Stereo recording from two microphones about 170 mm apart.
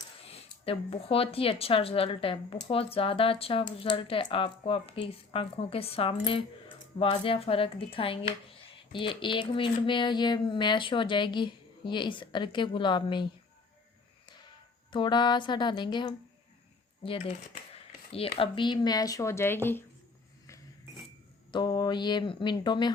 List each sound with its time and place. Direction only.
0.3 s speech: 35° left (ahead or behind)
14.9 s speech: 25° left (ahead or behind)
21.5 s speech: 25° left (ahead or behind)